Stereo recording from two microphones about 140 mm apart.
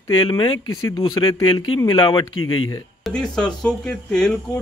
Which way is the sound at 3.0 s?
5° left (ahead or behind).